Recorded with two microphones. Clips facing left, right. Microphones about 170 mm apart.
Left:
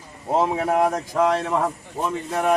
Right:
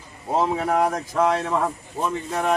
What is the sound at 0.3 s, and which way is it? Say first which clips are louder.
Speech: left 1 dB; 15° left (ahead or behind).